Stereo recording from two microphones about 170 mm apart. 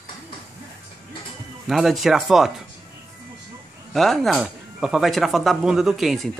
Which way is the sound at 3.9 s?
Centre (ahead or behind).